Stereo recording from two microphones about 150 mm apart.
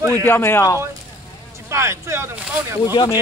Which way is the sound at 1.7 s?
20° right (ahead or behind).